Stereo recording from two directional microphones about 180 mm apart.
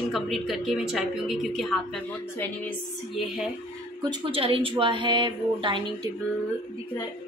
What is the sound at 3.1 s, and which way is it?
Speech, centre (ahead or behind).